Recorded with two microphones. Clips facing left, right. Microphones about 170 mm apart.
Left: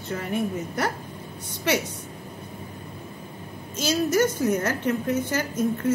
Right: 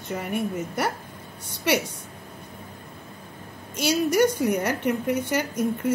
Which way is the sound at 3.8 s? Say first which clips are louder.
Right 1 dB; 10° right (ahead or behind).